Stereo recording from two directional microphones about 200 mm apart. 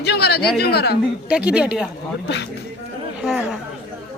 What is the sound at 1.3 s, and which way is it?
Speech, 5° right (ahead or behind).